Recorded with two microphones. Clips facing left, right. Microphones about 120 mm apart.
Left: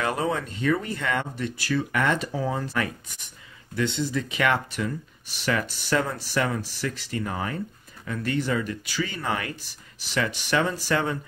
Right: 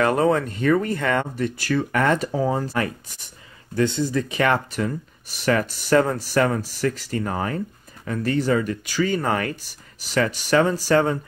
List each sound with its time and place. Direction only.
0.0 s speech: 55° right (ahead or behind); by 11.1 s 40° right (ahead or behind)